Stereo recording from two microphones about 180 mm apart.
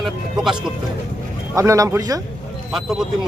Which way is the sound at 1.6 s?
15° right (ahead or behind).